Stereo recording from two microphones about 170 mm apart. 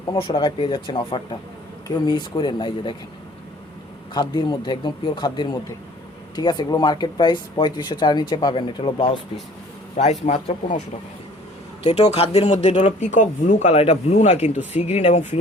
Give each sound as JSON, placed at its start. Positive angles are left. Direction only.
{"t": 0.1, "sound": "speech", "side_deg": 30}
{"t": 4.1, "sound": "speech", "side_deg": 25}
{"t": 10.2, "sound": "speech", "side_deg": 45}